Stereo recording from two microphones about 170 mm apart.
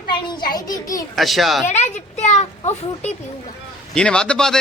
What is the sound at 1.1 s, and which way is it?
Speech, centre (ahead or behind).